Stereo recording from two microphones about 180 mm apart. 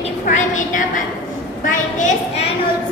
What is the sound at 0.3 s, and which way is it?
Speech, 40° left (ahead or behind).